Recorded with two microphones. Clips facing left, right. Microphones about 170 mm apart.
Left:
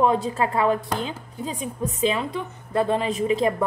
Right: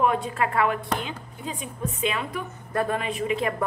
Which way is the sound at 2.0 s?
30° left (ahead or behind).